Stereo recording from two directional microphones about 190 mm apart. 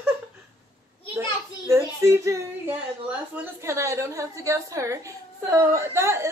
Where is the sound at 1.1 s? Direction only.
15° right (ahead or behind).